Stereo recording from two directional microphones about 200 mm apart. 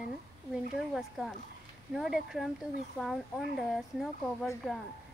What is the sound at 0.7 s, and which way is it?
Speech, centre (ahead or behind).